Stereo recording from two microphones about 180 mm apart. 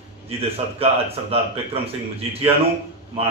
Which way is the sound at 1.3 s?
35° right (ahead or behind).